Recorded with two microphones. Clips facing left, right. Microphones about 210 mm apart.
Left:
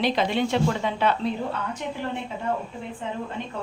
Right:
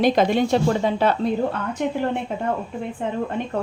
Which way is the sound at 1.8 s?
55° right (ahead or behind).